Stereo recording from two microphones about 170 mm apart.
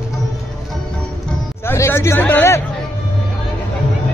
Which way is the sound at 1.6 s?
15° left (ahead or behind).